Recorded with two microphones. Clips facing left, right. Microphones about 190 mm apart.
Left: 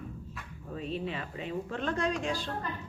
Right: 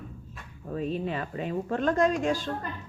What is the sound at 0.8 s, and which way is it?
A woman's voice, 45° right (ahead or behind).